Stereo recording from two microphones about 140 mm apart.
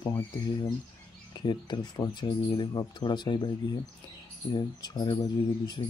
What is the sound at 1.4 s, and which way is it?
Speech, 30° left (ahead or behind).